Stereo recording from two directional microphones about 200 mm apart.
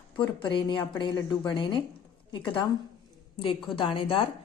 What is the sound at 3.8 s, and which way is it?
Speech, 25° left (ahead or behind).